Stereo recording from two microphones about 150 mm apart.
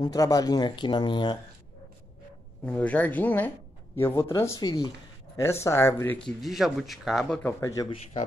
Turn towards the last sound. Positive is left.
turn(degrees=20)  # may be behind; listen again after turning